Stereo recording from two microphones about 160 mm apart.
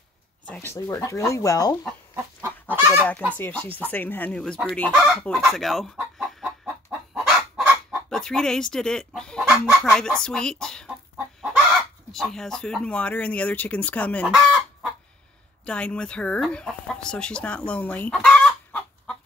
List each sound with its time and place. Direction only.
0.5 s speech: 15° left (ahead or behind)
2.7 s fowl: 15° right (ahead or behind)
3.3 s speech: 10° left (ahead or behind)
5.5 s chicken: centre (ahead or behind)
8.1 s speech: 5° left (ahead or behind)
14.2 s chicken: 5° right (ahead or behind)
15.6 s speech: 5° left (ahead or behind)